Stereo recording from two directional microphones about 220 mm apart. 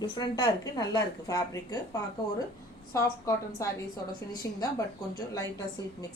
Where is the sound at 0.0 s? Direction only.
20° left (ahead or behind).